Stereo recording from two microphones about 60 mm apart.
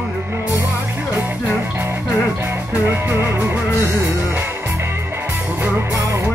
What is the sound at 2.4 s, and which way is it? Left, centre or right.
Music, right.